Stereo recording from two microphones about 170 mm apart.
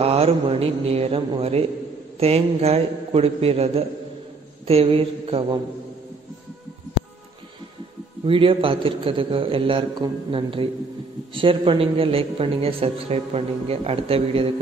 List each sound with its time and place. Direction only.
0.0 s a man's voice: 35° right (ahead or behind)
8.3 s a man's voice: 30° right (ahead or behind)